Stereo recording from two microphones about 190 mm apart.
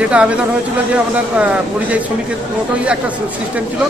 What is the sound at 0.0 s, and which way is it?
Speech, 5° right (ahead or behind).